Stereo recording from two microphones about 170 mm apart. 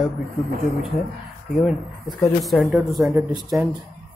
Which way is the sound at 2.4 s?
Centre (ahead or behind).